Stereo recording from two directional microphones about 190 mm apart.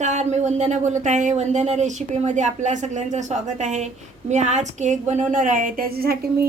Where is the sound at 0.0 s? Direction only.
35° right (ahead or behind).